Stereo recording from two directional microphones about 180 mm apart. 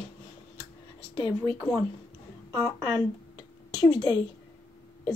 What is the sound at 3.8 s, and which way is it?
Speech, 20° left (ahead or behind).